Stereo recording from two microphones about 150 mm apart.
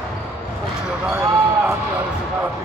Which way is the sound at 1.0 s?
15° right (ahead or behind).